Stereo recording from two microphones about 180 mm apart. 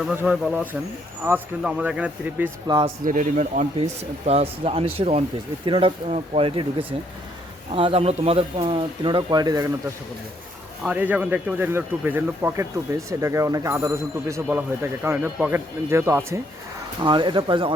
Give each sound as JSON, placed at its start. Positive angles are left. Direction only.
{"t": 0.0, "sound": "speech", "side_deg": -10}
{"t": 2.6, "sound": "speech", "side_deg": -25}
{"t": 3.0, "sound": "speech", "side_deg": -45}
{"t": 10.8, "sound": "speech", "side_deg": -10}
{"t": 17.0, "sound": "speech", "side_deg": -25}